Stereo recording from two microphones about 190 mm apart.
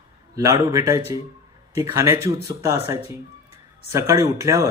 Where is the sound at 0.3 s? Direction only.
15° right (ahead or behind).